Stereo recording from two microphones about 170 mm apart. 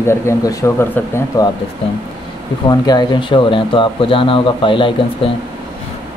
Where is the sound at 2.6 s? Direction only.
25° left (ahead or behind).